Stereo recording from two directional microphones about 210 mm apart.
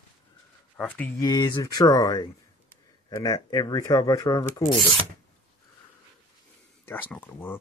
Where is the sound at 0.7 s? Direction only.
5° left (ahead or behind).